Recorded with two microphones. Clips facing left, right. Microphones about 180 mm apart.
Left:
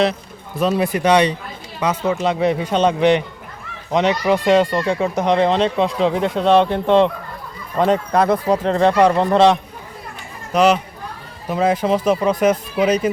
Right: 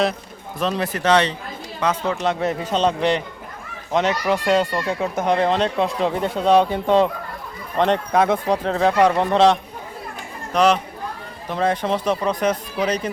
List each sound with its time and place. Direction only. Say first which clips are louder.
0.6 s a man's voice: left 5 dB; 10° left (ahead or behind)